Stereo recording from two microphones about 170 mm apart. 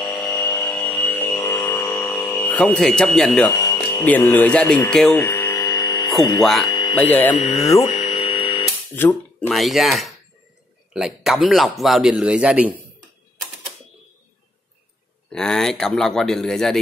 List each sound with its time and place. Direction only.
0.0 s a sound: 5° left (ahead or behind)
3.5 s speech: 20° left (ahead or behind)
5.2 s hum: 15° left (ahead or behind)
6.4 s a man's voice: centre (ahead or behind)
6.7 s a sound: 25° left (ahead or behind)
7.0 s speech: 10° left (ahead or behind)
7.3 s speech: 40° left (ahead or behind)
7.8 s radio: 35° left (ahead or behind)
9.1 s a man's voice: centre (ahead or behind)
15.2 s a man's voice: 5° left (ahead or behind)